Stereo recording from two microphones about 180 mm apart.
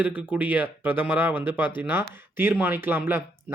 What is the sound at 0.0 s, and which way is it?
Speech, 10° right (ahead or behind).